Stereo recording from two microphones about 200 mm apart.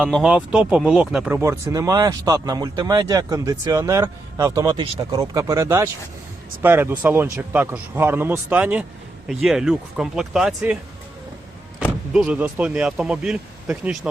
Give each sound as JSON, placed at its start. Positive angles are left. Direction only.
{"t": 0.0, "sound": "speech", "side_deg": -5}
{"t": 11.8, "sound": "speech", "side_deg": -5}